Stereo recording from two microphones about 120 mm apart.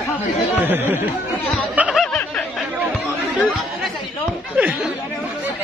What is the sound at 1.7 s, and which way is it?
Snicker, 10° right (ahead or behind).